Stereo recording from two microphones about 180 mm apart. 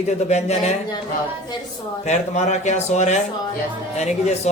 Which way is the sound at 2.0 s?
40° left (ahead or behind).